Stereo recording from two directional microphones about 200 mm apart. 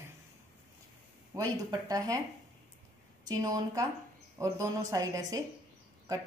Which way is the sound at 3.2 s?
20° right (ahead or behind).